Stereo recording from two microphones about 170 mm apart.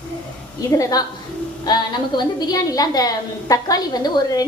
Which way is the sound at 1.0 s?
20° left (ahead or behind).